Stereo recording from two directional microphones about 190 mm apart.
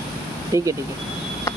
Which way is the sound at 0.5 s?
15° right (ahead or behind).